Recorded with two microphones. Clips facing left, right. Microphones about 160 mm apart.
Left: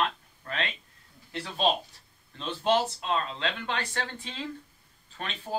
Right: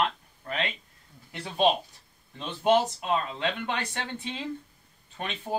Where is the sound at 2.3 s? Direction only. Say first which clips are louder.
Right 3 dB; 15° right (ahead or behind).